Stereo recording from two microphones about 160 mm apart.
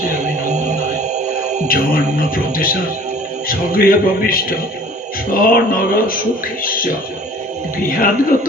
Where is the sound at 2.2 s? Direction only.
60° left (ahead or behind).